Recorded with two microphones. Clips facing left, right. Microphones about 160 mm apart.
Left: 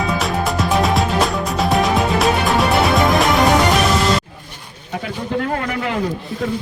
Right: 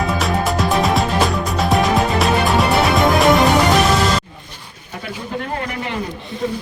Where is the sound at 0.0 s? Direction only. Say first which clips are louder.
Right 1 dB; centre (ahead or behind).